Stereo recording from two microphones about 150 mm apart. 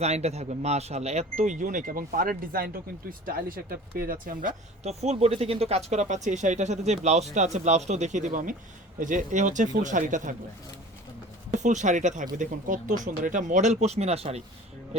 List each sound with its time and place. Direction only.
0.0 s speech: 45° right (ahead or behind); by 4.5 s 65° right (ahead or behind)
4.8 s speech: 45° right (ahead or behind)
11.5 s speech: 55° right (ahead or behind)